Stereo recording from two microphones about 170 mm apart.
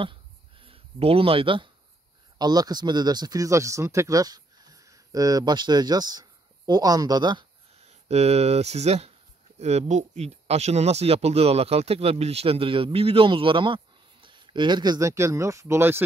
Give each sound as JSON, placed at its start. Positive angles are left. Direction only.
{"t": 0.0, "sound": "a sound", "side_deg": -30}
{"t": 2.3, "sound": "speech", "side_deg": -25}
{"t": 7.8, "sound": "speech", "side_deg": -40}